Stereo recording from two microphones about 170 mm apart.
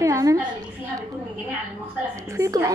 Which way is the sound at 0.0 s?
20° right (ahead or behind).